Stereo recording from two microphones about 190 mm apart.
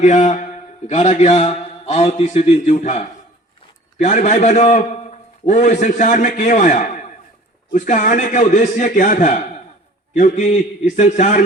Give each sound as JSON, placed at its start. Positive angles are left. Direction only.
{"t": 0.0, "sound": "a man's voice", "side_deg": 40}